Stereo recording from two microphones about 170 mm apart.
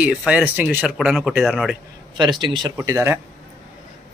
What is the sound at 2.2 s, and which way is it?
Speech, 25° right (ahead or behind).